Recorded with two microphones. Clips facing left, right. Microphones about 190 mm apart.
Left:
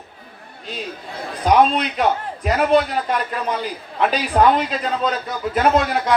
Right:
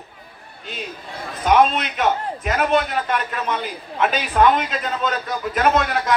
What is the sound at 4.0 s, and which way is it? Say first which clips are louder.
A man's voice: left 1 dB; 35° left (ahead or behind).